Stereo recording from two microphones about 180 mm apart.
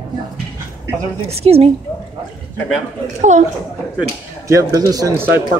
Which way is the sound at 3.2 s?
40° right (ahead or behind).